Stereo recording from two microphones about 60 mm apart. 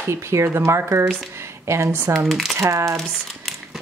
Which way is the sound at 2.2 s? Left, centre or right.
Centre.